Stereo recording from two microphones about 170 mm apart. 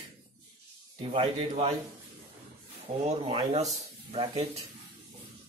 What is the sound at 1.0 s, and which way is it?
Speech, 35° right (ahead or behind).